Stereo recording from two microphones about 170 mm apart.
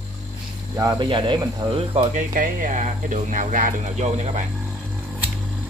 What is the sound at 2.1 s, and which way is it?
Speech, 55° right (ahead or behind).